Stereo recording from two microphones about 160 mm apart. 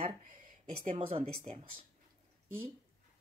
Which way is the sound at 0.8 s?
45° right (ahead or behind).